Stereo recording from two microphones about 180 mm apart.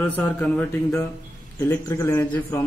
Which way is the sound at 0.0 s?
10° left (ahead or behind).